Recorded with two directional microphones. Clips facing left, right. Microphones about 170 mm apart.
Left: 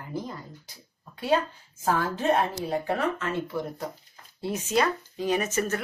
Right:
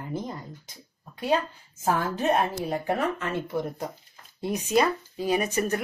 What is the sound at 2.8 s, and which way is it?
Speech, 15° right (ahead or behind).